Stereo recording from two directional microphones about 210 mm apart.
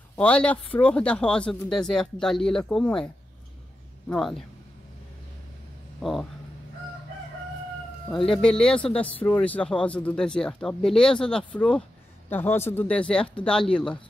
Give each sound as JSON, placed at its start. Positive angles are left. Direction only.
{"t": 0.1, "sound": "speech", "side_deg": 5}
{"t": 4.1, "sound": "speech", "side_deg": 0}
{"t": 5.9, "sound": "speech", "side_deg": 0}
{"t": 8.3, "sound": "speech", "side_deg": 5}